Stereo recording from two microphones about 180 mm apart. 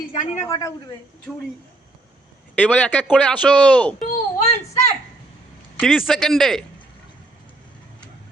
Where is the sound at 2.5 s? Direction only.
10° left (ahead or behind).